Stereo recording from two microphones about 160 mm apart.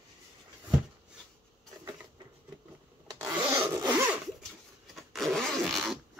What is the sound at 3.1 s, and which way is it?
Rub, 20° right (ahead or behind).